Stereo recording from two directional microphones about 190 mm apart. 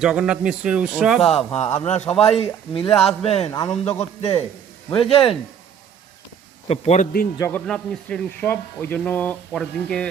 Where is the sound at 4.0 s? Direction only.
30° left (ahead or behind).